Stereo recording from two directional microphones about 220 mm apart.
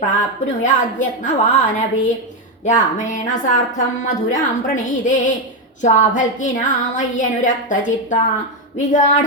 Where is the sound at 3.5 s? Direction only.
35° left (ahead or behind).